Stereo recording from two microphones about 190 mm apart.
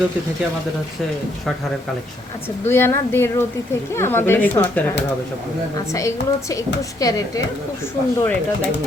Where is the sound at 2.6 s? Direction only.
10° left (ahead or behind).